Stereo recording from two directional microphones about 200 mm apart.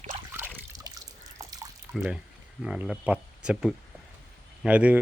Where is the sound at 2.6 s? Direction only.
5° right (ahead or behind).